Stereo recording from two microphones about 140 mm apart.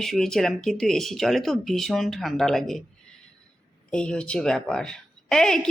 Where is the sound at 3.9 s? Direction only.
5° left (ahead or behind).